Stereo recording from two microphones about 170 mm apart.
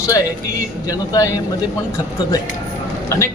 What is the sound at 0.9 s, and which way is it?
Speech, 20° left (ahead or behind).